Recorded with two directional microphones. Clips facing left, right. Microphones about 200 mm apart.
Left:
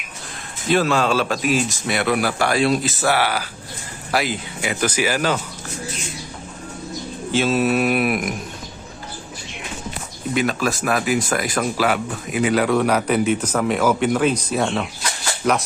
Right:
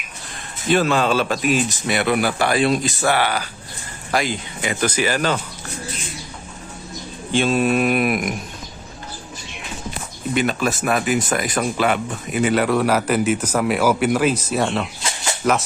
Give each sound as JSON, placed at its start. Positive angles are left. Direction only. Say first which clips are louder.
{"t": 0.7, "sound": "speech", "louder": "right 1 dB", "side_deg": 0}
{"t": 7.3, "sound": "speech", "louder": "right 1 dB", "side_deg": 5}
{"t": 10.3, "sound": "speech", "louder": "even", "side_deg": 0}
{"t": 15.0, "sound": "a sound", "louder": "right 1 dB", "side_deg": -20}